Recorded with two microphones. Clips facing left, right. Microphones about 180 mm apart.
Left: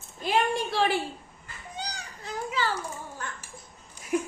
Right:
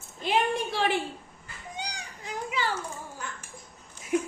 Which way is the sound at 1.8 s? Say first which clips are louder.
Left 1 dB; 15° right (ahead or behind).